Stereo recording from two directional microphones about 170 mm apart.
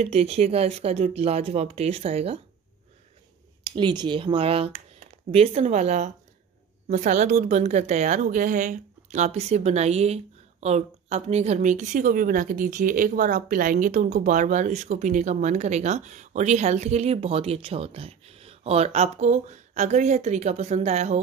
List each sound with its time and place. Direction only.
0.0 s speech: 40° right (ahead or behind)
3.7 s a woman's voice: 25° right (ahead or behind)